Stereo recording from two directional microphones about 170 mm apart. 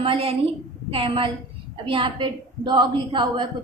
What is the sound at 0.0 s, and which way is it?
A woman's voice, 35° right (ahead or behind).